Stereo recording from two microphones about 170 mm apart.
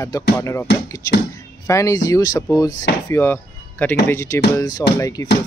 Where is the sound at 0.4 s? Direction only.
15° left (ahead or behind).